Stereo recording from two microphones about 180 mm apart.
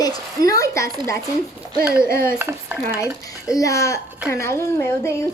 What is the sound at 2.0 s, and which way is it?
Speech, 15° left (ahead or behind).